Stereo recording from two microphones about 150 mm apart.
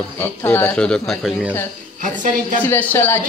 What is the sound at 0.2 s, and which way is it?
Speech, 15° left (ahead or behind).